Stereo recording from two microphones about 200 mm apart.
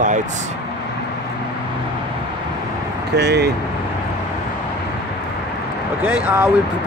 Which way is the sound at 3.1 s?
55° right (ahead or behind).